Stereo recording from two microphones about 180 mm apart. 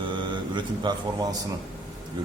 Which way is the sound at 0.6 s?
25° right (ahead or behind).